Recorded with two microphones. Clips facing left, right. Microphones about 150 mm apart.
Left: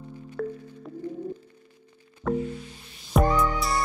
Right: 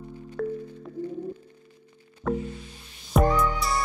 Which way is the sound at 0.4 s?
Centre (ahead or behind).